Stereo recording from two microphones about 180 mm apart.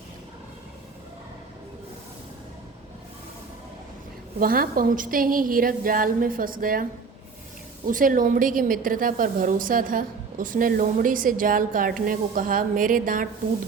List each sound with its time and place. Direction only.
4.4 s a woman's voice: 55° right (ahead or behind)
7.9 s a woman's voice: 50° right (ahead or behind)